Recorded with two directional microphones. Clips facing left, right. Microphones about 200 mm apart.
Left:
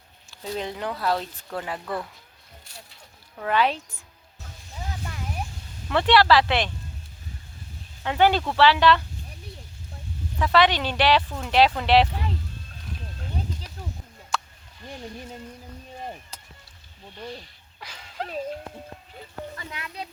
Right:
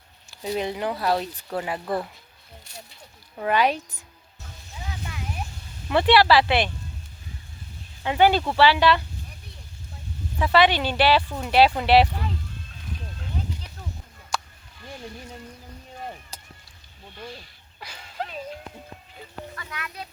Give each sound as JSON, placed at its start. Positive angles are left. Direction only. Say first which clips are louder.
{"t": 0.3, "sound": "speech", "louder": "right 4 dB", "side_deg": -10}
{"t": 3.3, "sound": "speech", "louder": "right 1 dB", "side_deg": -10}
{"t": 5.9, "sound": "speech", "louder": "right 1 dB", "side_deg": -10}
{"t": 8.0, "sound": "speech", "louder": "right 1 dB", "side_deg": -5}
{"t": 10.3, "sound": "speech", "louder": "right 1 dB", "side_deg": -5}
{"t": 17.2, "sound": "a sound", "louder": "left 4 dB", "side_deg": -5}
{"t": 19.5, "sound": "speech", "louder": "left 1 dB", "side_deg": 20}